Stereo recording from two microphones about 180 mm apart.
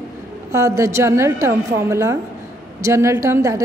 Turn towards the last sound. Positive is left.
turn(degrees=-15)  # may be behind; listen again after turning